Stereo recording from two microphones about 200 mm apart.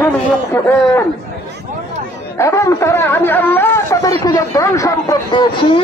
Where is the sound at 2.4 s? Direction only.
15° left (ahead or behind).